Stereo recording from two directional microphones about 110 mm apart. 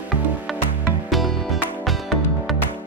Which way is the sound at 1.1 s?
Centre (ahead or behind).